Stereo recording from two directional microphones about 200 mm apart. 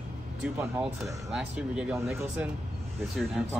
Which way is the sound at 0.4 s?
5° right (ahead or behind).